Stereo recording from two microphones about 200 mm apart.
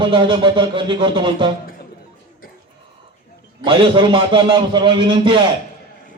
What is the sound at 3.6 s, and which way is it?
A man's voice, 25° right (ahead or behind).